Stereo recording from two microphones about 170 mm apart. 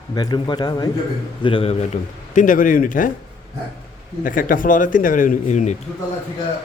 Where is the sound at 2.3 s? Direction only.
50° left (ahead or behind).